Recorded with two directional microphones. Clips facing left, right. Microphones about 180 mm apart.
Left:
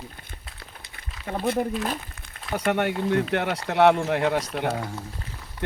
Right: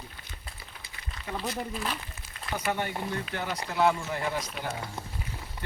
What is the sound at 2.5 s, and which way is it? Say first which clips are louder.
Speech: left 7 dB; 70° left (ahead or behind).